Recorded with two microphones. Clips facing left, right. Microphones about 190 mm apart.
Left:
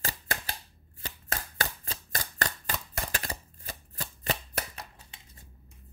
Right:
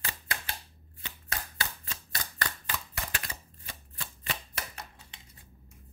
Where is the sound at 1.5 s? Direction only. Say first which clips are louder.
Left 4 dB; 45° left (ahead or behind).